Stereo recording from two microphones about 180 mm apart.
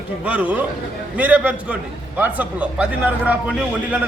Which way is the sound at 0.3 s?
10° right (ahead or behind).